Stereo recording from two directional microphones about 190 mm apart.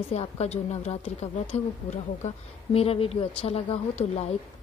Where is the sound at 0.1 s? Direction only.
35° left (ahead or behind).